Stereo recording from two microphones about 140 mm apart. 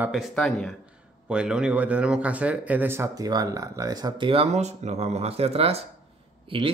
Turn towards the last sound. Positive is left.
turn(degrees=-40)  # may be behind; listen again after turning